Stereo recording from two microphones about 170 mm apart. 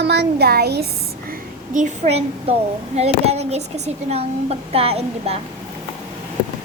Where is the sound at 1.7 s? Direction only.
40° right (ahead or behind).